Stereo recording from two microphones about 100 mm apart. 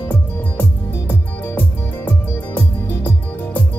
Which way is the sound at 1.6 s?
20° left (ahead or behind).